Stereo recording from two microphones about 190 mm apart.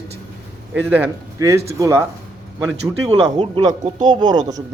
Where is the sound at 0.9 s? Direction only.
10° right (ahead or behind).